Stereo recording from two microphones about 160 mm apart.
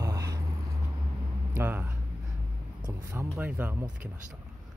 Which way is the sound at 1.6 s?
10° right (ahead or behind).